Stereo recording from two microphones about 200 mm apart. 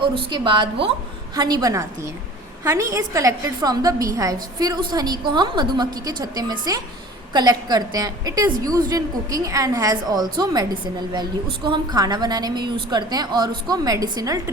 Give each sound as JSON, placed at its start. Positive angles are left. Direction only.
{"t": 0.2, "sound": "a woman's voice", "side_deg": -25}